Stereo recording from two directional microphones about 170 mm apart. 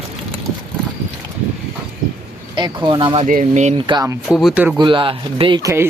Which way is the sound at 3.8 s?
25° right (ahead or behind).